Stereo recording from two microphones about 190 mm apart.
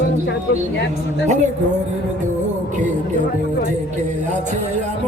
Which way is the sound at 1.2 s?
40° right (ahead or behind).